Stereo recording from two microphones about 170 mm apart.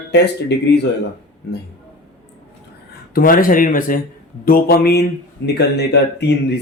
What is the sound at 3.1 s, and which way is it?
Speech, 55° left (ahead or behind).